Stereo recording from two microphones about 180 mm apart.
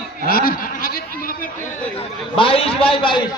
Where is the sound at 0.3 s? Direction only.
55° left (ahead or behind).